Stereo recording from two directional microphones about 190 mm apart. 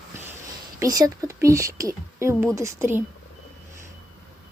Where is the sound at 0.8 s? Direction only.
20° right (ahead or behind).